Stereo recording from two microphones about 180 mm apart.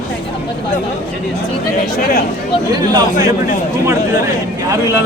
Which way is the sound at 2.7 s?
20° right (ahead or behind).